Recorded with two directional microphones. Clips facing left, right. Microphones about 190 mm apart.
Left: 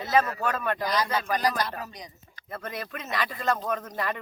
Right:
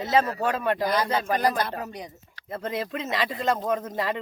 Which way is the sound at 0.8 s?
55° right (ahead or behind).